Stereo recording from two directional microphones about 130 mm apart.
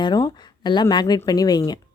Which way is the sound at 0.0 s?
35° left (ahead or behind).